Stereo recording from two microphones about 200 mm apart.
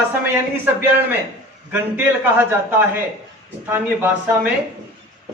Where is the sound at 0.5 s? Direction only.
10° right (ahead or behind).